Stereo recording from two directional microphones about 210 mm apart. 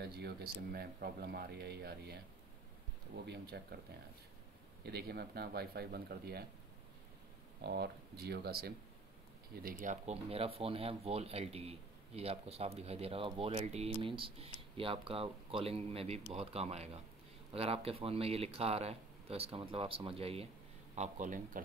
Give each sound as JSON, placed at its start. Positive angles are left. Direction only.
{"t": 0.0, "sound": "speech", "side_deg": -50}
{"t": 3.3, "sound": "speech", "side_deg": -50}
{"t": 4.8, "sound": "speech", "side_deg": -50}
{"t": 7.6, "sound": "a man's voice", "side_deg": -50}